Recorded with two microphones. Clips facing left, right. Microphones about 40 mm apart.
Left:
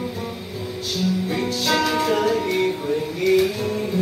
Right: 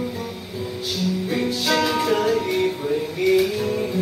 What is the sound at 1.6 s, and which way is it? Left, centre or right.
Music, centre.